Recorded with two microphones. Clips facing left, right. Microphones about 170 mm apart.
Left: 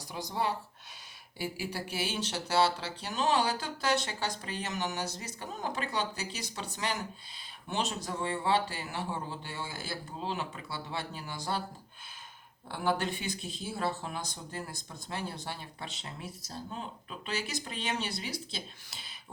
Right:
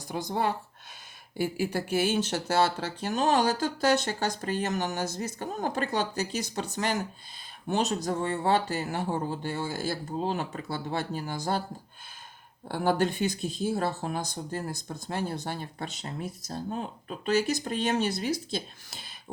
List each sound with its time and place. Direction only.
0.1 s speech: 50° right (ahead or behind)
12.6 s speech: 45° right (ahead or behind)